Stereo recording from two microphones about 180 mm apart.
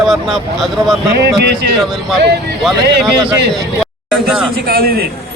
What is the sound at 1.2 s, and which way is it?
Speech, 70° right (ahead or behind).